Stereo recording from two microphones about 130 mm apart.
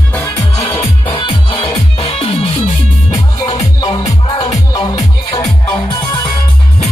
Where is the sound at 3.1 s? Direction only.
30° left (ahead or behind).